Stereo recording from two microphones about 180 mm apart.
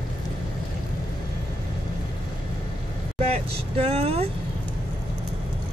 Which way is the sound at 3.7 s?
35° right (ahead or behind).